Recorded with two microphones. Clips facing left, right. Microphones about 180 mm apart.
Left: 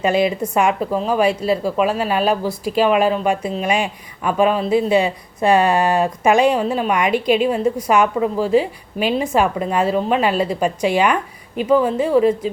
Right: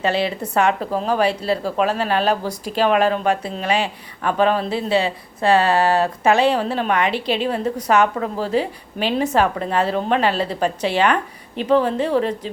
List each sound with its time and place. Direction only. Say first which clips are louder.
0.0 s speech: left 4 dB; 15° left (ahead or behind)